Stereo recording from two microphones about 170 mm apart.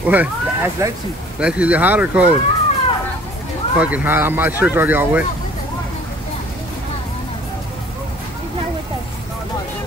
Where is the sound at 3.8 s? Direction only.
10° right (ahead or behind).